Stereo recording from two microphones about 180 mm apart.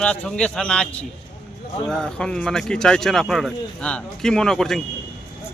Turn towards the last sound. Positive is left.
turn(degrees=0)  # may be behind; listen again after turning